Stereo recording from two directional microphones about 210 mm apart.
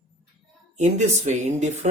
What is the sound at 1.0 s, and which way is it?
Speech, 35° right (ahead or behind).